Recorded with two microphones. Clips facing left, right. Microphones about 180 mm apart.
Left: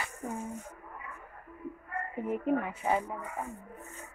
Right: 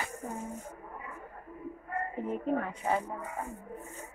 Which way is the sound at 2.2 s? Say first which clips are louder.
Left 3 dB; 10° left (ahead or behind).